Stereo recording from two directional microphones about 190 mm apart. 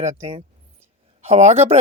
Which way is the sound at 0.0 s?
35° right (ahead or behind).